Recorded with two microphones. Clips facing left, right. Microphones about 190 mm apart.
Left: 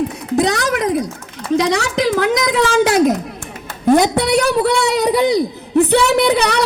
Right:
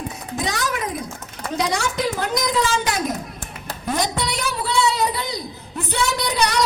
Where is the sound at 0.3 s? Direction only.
70° left (ahead or behind).